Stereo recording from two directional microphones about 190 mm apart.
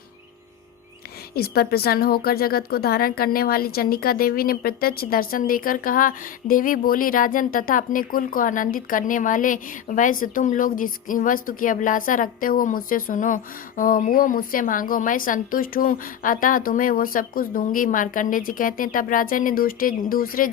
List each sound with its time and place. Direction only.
1.4 s speech: 55° left (ahead or behind)